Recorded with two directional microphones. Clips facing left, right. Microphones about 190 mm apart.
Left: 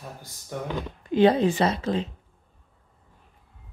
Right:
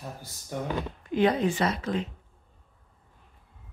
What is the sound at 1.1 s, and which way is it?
A woman's voice, 30° left (ahead or behind).